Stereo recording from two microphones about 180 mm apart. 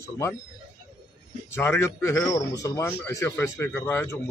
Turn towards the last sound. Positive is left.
turn(degrees=10)  # may be behind; listen again after turning